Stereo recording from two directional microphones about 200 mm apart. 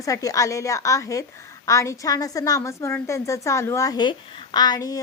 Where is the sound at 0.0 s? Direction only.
15° left (ahead or behind).